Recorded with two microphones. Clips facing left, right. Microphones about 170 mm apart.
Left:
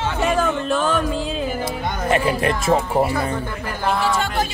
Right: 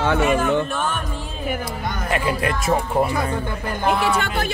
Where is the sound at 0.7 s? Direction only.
90° left.